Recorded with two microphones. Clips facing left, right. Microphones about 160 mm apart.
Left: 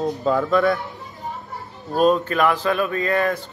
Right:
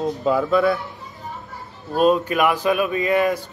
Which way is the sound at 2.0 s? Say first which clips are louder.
Even; 10° right (ahead or behind).